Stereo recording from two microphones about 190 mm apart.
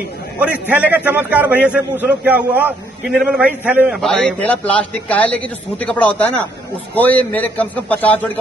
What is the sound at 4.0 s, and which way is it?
A man's voice, 5° left (ahead or behind).